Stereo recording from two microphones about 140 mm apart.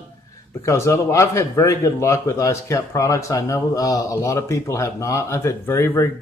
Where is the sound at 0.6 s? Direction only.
20° left (ahead or behind).